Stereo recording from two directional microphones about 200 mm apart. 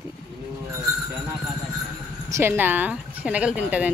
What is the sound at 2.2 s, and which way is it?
Speech, 15° right (ahead or behind).